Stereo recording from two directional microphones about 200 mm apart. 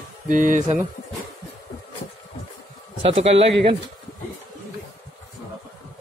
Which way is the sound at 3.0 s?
25° right (ahead or behind).